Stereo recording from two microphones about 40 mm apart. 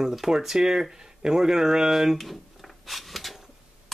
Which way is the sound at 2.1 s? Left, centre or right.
Centre.